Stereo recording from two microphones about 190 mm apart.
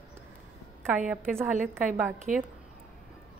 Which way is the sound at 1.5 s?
45° right (ahead or behind).